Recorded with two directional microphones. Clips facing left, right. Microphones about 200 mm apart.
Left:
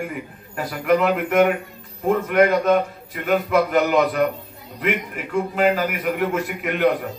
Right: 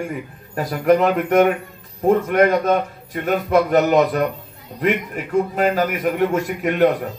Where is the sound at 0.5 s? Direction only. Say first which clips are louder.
Right 3 dB; 40° right (ahead or behind).